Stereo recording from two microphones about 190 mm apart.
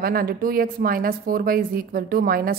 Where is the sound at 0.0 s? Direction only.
50° right (ahead or behind).